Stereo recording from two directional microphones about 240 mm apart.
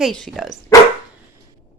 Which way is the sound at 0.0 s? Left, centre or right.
Centre.